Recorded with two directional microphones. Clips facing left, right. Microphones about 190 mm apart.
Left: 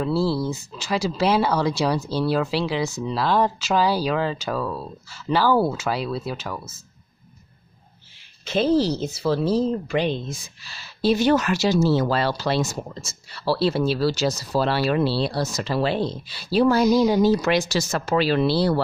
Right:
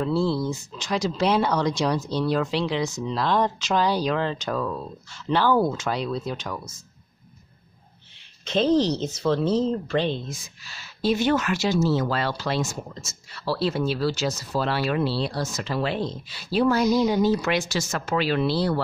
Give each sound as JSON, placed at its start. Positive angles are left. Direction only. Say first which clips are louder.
{"t": 0.0, "sound": "speech", "louder": "left 1 dB", "side_deg": 5}
{"t": 8.5, "sound": "speech", "louder": "left 1 dB", "side_deg": 5}
{"t": 10.2, "sound": "speech", "louder": "left 3 dB", "side_deg": 30}